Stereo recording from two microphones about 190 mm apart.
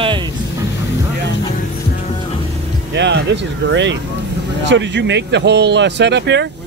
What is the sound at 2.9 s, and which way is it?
Speech, 70° right (ahead or behind).